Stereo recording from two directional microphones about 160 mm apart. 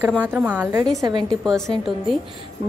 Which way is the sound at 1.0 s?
25° right (ahead or behind).